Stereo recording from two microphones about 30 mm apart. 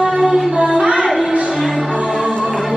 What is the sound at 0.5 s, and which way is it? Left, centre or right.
Music, right.